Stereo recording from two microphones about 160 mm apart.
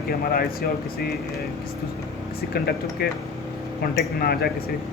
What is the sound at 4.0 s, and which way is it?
Speech, 75° left (ahead or behind).